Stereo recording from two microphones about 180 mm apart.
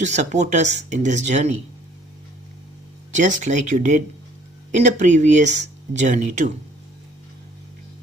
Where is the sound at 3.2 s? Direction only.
40° right (ahead or behind).